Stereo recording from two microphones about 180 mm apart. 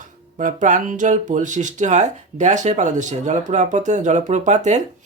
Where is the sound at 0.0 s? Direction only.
45° right (ahead or behind).